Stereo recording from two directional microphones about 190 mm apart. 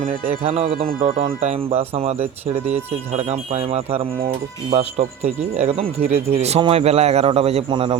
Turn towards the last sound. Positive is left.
turn(degrees=-25)  # may be behind; listen again after turning